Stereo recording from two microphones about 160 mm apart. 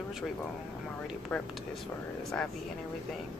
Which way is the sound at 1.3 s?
5° left (ahead or behind).